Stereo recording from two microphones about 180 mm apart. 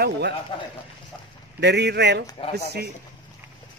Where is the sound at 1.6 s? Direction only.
70° right (ahead or behind).